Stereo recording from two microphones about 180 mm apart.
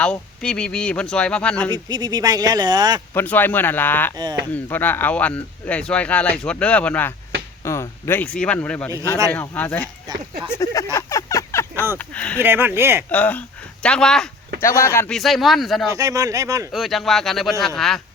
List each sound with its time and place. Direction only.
0.0 s speech: 5° left (ahead or behind)
1.7 s speech: 25° right (ahead or behind)
3.2 s speech: 10° left (ahead or behind)
4.1 s speech: 25° right (ahead or behind)
4.5 s speech: 10° left (ahead or behind)
10.9 s a sound: 15° left (ahead or behind)
11.7 s speech: 15° right (ahead or behind)
11.9 s speech: 5° left (ahead or behind)
12.4 s speech: 10° right (ahead or behind)
13.1 s speech: 10° left (ahead or behind)
14.6 s speech: 15° left (ahead or behind)
15.1 s speech: centre (ahead or behind)
15.9 s speech: 20° right (ahead or behind)
16.7 s speech: centre (ahead or behind)